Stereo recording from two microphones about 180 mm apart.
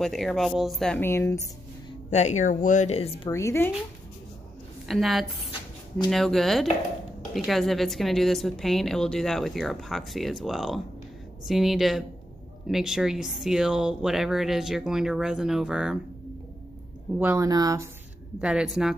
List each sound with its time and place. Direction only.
0.0 s a woman's voice: centre (ahead or behind)
2.0 s speech: 40° left (ahead or behind)
3.3 s speech: 15° left (ahead or behind)
4.8 s a woman's voice: centre (ahead or behind)
17.2 s speech: 15° right (ahead or behind)
18.4 s a woman's voice: 5° right (ahead or behind)